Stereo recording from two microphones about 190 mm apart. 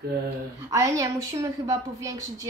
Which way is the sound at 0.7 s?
15° right (ahead or behind).